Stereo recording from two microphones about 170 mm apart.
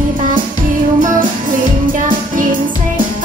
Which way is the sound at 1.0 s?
50° right (ahead or behind).